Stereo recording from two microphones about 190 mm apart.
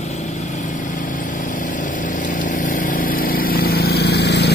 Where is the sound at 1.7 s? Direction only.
45° left (ahead or behind).